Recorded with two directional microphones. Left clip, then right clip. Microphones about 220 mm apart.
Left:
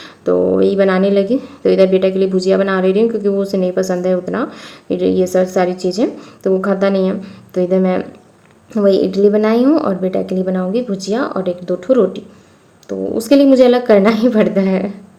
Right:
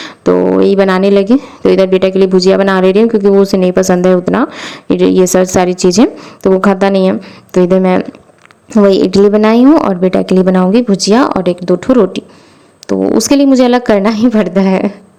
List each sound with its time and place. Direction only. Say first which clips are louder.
0.0 s speech: right 4 dB; 40° right (ahead or behind)